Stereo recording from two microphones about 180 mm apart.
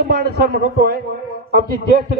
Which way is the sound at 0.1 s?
60° right (ahead or behind).